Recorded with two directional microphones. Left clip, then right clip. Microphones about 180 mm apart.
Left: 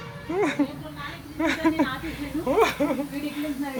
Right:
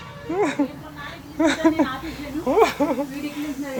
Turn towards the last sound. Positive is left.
turn(degrees=-15)  # may be behind; listen again after turning